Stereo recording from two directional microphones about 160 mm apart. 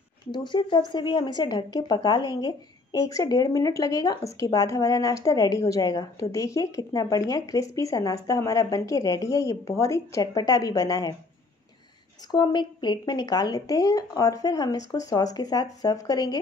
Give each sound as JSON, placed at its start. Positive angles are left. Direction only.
{"t": 0.3, "sound": "speech", "side_deg": 30}
{"t": 12.3, "sound": "speech", "side_deg": 25}